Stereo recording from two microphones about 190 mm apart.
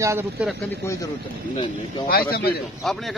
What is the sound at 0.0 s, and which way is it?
Speech, 15° right (ahead or behind).